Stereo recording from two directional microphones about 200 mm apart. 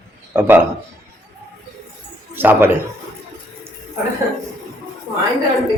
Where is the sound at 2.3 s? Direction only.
10° right (ahead or behind).